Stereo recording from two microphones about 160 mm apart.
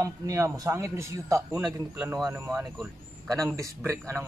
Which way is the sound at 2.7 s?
Centre (ahead or behind).